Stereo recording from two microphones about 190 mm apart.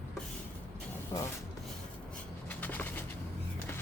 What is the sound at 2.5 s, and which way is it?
Bird, 10° left (ahead or behind).